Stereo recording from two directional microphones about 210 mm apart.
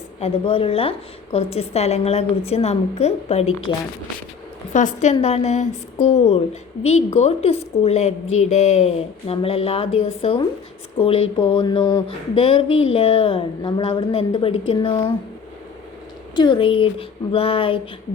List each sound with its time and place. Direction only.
0.2 s a woman's voice: 25° left (ahead or behind)
4.7 s a woman's voice: 35° left (ahead or behind)
16.3 s a woman's voice: 20° left (ahead or behind)